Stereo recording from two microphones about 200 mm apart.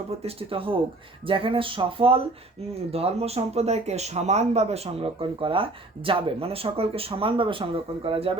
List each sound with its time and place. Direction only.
0.2 s speech: 30° right (ahead or behind)